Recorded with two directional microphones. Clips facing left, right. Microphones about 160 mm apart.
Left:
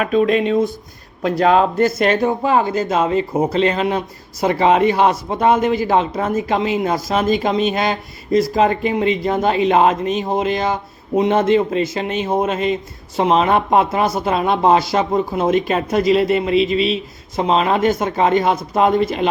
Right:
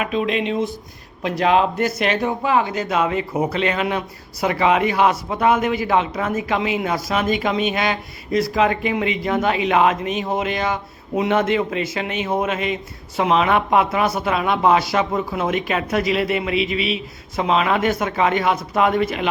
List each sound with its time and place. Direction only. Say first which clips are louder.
0.0 s speech: left 6 dB; 45° left (ahead or behind)
16.7 s a man's voice: left 5 dB; 10° right (ahead or behind)
17.3 s speech: left 2 dB; 35° left (ahead or behind)